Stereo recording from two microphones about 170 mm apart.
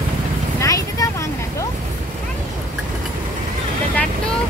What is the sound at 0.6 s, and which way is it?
Vehicle, 20° left (ahead or behind).